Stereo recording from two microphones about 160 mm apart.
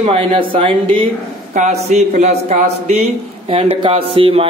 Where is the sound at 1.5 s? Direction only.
45° right (ahead or behind).